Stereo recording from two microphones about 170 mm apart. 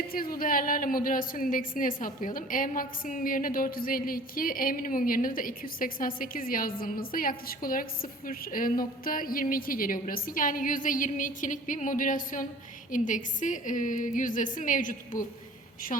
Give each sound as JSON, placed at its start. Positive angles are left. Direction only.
{"t": 0.1, "sound": "a woman's voice", "side_deg": 55}